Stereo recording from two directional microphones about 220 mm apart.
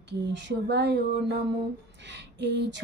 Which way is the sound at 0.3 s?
50° right (ahead or behind).